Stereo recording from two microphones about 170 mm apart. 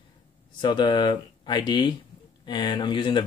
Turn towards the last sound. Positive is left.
turn(degrees=25)  # may be behind; listen again after turning